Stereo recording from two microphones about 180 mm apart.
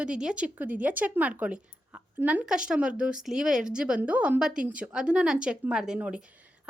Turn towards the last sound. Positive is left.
turn(degrees=-5)  # may be behind; listen again after turning